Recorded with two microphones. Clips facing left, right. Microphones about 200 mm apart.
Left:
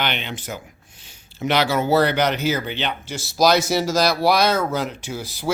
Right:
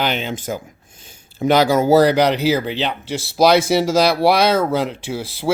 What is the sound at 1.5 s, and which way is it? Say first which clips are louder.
Speech: right 6 dB; 45° right (ahead or behind).